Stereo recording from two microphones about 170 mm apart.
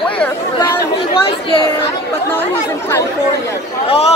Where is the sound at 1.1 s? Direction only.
30° left (ahead or behind).